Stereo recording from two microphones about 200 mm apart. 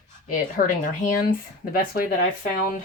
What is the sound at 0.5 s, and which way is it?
Speech, 40° left (ahead or behind).